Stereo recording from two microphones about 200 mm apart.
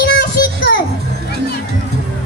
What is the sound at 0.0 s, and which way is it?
Child singing, 50° left (ahead or behind).